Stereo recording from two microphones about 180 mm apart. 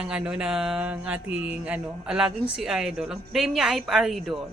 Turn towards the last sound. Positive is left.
turn(degrees=0)  # may be behind; listen again after turning